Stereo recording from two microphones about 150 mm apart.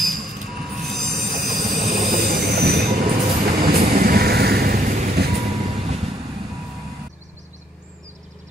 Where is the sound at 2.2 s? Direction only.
90° right.